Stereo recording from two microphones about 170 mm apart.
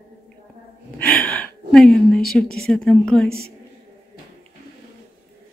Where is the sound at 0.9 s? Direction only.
10° left (ahead or behind).